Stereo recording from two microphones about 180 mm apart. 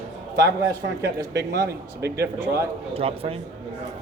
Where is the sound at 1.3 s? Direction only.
65° right (ahead or behind).